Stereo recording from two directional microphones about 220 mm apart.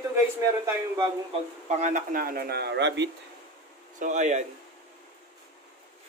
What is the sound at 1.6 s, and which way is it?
Speech, 35° right (ahead or behind).